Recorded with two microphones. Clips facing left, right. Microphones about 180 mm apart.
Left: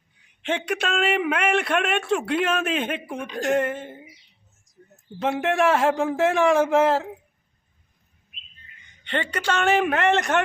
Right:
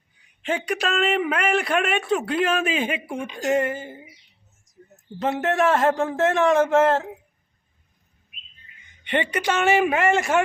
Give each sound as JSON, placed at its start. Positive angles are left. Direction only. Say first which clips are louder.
{"t": 0.4, "sound": "a man's voice", "louder": "right 1 dB", "side_deg": 0}
{"t": 5.2, "sound": "a man's voice", "louder": "even", "side_deg": 0}
{"t": 9.0, "sound": "a man's voice", "louder": "right 2 dB", "side_deg": -10}